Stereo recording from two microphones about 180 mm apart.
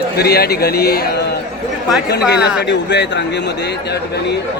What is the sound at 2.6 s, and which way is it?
A man's voice, 70° left (ahead or behind).